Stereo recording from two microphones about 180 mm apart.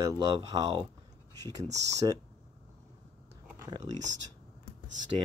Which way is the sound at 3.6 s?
20° right (ahead or behind).